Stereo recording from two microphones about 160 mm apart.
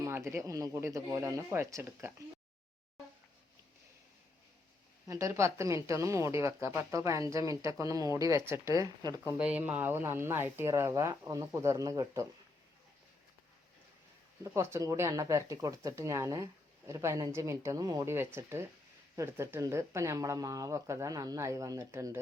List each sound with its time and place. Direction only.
0.0 s speech: 15° right (ahead or behind)
5.0 s speech: 20° right (ahead or behind)
9.4 s speech: 10° right (ahead or behind)
14.4 s speech: 20° right (ahead or behind)